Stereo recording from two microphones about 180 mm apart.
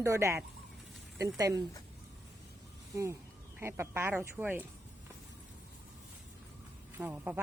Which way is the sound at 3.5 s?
15° right (ahead or behind).